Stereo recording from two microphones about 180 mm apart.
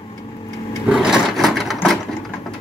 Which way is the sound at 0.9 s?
5° right (ahead or behind).